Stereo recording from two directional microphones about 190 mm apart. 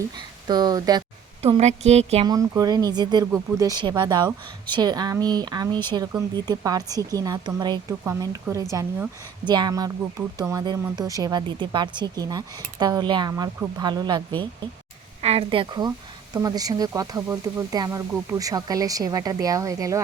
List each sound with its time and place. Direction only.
0.4 s speech: 20° right (ahead or behind)
1.4 s speech: 35° right (ahead or behind)
2.2 s a woman's voice: 20° right (ahead or behind)
15.2 s speech: 30° right (ahead or behind)